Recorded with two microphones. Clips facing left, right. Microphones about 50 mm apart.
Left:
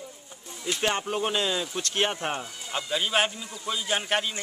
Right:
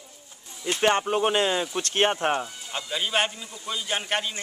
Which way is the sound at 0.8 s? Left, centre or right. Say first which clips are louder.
Right 6 dB; right.